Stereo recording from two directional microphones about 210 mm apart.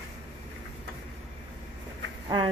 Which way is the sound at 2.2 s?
25° right (ahead or behind).